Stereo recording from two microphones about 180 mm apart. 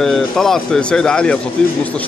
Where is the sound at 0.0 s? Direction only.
Centre (ahead or behind).